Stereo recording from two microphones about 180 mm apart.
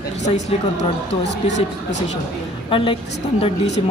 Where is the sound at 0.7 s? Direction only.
75° left (ahead or behind).